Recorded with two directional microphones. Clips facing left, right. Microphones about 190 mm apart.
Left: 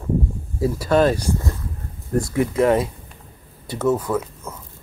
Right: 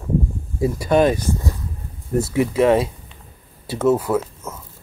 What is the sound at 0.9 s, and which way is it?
Speech, 10° right (ahead or behind).